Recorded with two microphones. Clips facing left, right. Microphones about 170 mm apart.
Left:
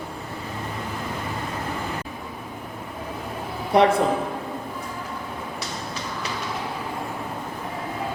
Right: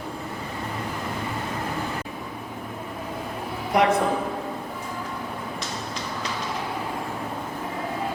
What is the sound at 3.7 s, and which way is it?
Speech, 30° left (ahead or behind).